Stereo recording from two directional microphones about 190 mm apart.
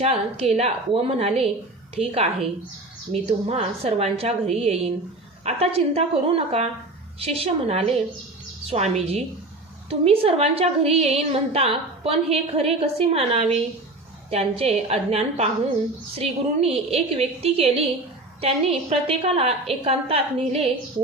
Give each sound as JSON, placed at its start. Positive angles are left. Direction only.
{"t": 0.0, "sound": "a woman's voice", "side_deg": -35}